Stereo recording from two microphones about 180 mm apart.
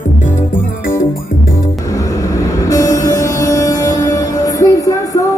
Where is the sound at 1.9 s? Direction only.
20° left (ahead or behind).